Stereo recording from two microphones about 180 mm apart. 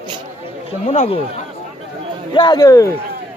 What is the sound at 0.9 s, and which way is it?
Speech, 35° left (ahead or behind).